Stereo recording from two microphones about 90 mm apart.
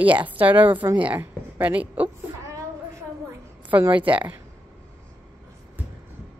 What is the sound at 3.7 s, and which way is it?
Speech, 20° right (ahead or behind).